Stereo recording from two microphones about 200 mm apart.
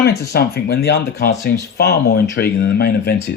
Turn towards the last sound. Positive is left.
turn(degrees=50)  # may be behind; listen again after turning